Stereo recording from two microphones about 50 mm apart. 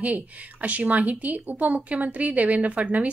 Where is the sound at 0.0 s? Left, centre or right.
Right.